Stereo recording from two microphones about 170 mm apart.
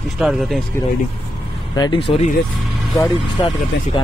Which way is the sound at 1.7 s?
25° left (ahead or behind).